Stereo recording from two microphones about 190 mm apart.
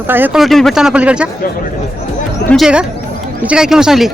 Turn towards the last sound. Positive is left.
turn(degrees=0)  # may be behind; listen again after turning